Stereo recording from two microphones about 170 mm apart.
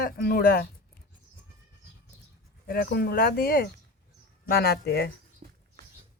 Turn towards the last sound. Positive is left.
turn(degrees=-40)  # may be behind; listen again after turning